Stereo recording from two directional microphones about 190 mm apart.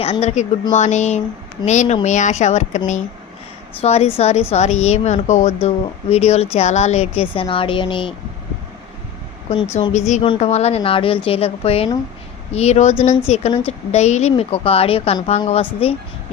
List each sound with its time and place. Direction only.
0.0 s a woman's voice: 35° left (ahead or behind)
9.9 s a woman's voice: 35° left (ahead or behind)